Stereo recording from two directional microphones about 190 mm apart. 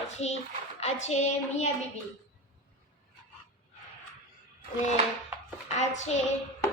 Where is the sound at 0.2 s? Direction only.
35° left (ahead or behind).